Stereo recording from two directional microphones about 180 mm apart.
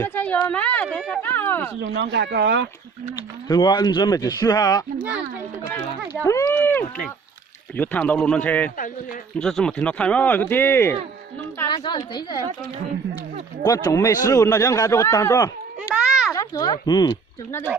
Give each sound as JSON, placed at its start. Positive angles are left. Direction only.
{"t": 0.0, "sound": "speech", "side_deg": 10}
{"t": 1.8, "sound": "speech", "side_deg": -80}
{"t": 3.5, "sound": "speech", "side_deg": 20}
{"t": 6.2, "sound": "speech", "side_deg": 15}
{"t": 11.7, "sound": "speech", "side_deg": 25}
{"t": 13.6, "sound": "speech", "side_deg": 20}
{"t": 16.0, "sound": "a sound", "side_deg": -5}
{"t": 16.3, "sound": "speech", "side_deg": 20}